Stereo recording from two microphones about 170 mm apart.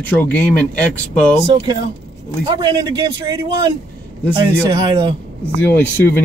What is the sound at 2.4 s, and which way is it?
A man's voice, 25° right (ahead or behind).